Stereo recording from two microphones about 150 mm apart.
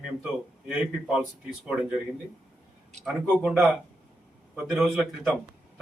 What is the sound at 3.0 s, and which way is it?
Speech, 5° right (ahead or behind).